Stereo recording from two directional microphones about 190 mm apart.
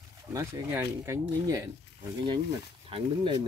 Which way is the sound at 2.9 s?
25° right (ahead or behind).